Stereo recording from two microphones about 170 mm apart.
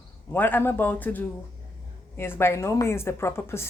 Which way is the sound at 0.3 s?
10° left (ahead or behind).